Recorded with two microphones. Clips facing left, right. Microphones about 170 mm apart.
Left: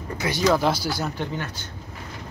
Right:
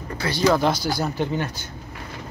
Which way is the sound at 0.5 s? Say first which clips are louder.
Right 1 dB; 5° left (ahead or behind).